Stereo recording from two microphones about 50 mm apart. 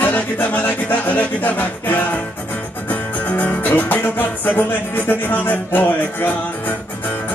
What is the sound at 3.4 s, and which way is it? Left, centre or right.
Music, left.